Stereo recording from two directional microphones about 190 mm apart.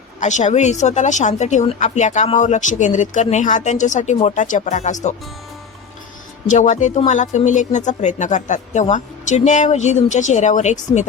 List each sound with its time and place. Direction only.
0.2 s speech: 40° left (ahead or behind)
6.5 s speech: 40° left (ahead or behind)